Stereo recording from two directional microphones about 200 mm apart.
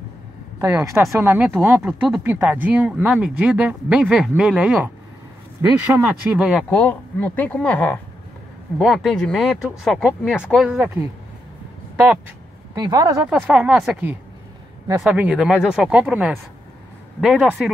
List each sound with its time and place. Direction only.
0.6 s speech: 20° right (ahead or behind)
6.7 s speech: 5° left (ahead or behind)
12.7 s speech: 20° right (ahead or behind)
13.2 s speech: 5° right (ahead or behind)